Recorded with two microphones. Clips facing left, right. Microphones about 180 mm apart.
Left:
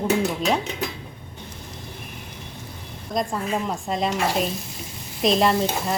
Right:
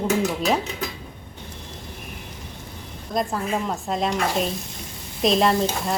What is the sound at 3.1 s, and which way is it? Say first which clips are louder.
Stir: even; centre (ahead or behind).